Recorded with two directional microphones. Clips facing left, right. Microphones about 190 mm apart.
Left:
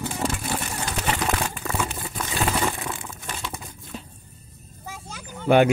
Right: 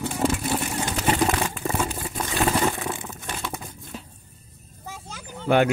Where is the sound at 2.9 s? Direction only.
20° right (ahead or behind).